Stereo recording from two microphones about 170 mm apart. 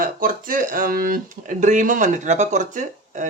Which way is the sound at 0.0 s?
55° right (ahead or behind).